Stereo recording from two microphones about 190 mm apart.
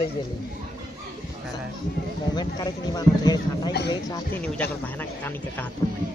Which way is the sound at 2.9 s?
20° left (ahead or behind).